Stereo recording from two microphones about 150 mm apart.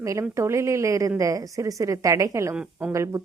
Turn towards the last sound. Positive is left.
turn(degrees=-20)  # may be behind; listen again after turning